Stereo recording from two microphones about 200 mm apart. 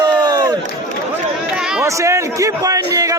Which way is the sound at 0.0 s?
20° right (ahead or behind).